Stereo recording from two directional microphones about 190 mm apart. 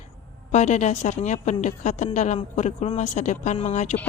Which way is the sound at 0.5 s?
40° left (ahead or behind).